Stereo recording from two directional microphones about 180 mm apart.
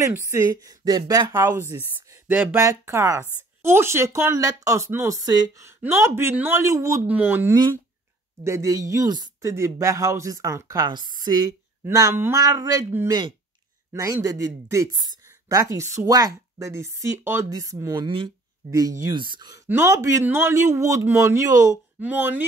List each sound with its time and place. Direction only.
0.0 s speech: 15° right (ahead or behind)